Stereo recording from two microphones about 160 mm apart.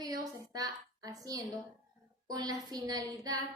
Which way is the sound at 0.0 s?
25° right (ahead or behind).